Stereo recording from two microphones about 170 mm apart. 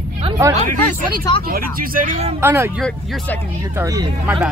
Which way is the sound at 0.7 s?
50° right (ahead or behind).